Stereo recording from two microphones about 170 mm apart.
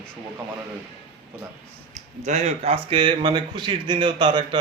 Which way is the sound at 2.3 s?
40° right (ahead or behind).